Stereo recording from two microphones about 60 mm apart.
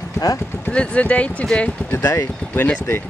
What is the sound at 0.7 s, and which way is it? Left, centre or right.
Speech, left.